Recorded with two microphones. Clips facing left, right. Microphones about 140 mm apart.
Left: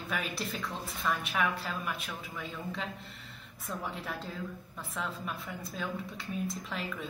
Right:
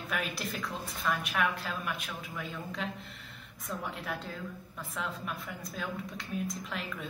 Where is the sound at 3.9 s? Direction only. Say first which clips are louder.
Right 1 dB; centre (ahead or behind).